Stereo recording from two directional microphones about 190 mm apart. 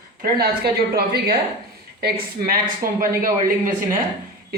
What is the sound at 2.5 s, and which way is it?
Speech, 50° right (ahead or behind).